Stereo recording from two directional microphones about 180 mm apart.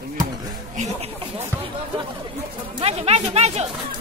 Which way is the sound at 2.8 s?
35° right (ahead or behind).